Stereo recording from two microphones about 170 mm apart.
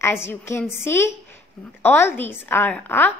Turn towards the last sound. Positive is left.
turn(degrees=10)  # may be behind; listen again after turning